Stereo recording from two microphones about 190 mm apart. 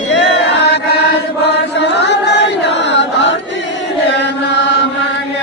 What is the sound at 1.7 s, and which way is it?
Chant, 65° left (ahead or behind).